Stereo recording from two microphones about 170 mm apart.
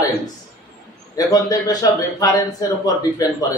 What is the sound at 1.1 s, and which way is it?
A man's voice, 20° left (ahead or behind).